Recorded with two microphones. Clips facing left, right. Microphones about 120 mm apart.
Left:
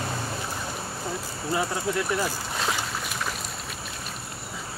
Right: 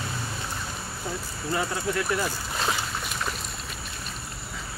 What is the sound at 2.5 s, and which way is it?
Boat, centre (ahead or behind).